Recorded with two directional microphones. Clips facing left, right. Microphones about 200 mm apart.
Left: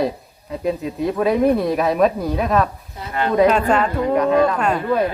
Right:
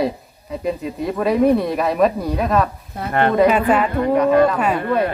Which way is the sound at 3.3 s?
5° right (ahead or behind).